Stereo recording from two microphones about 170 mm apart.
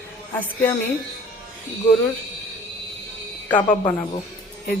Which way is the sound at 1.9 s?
10° left (ahead or behind).